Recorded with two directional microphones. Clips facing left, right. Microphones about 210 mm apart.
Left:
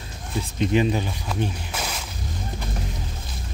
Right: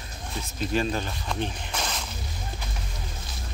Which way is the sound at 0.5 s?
15° left (ahead or behind).